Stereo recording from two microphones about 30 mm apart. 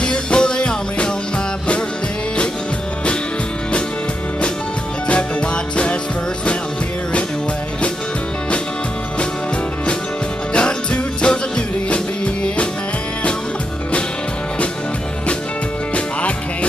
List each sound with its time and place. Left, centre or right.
0.0 s music: left
10.5 s music: left
15.9 s music: left